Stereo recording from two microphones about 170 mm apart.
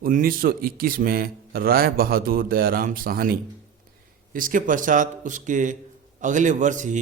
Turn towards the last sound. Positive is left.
turn(degrees=-45)  # may be behind; listen again after turning